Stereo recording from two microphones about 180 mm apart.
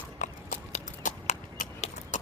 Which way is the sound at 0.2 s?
45° left (ahead or behind).